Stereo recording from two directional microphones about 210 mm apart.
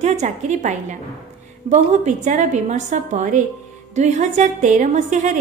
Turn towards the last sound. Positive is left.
turn(degrees=-35)  # may be behind; listen again after turning